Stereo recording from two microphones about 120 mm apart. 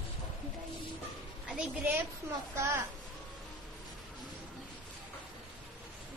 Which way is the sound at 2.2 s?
20° right (ahead or behind).